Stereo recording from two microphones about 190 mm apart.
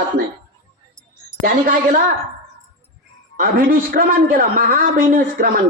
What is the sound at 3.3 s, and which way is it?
A man's voice, 50° right (ahead or behind).